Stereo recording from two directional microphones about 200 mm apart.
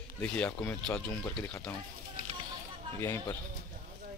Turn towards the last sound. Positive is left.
turn(degrees=15)  # may be behind; listen again after turning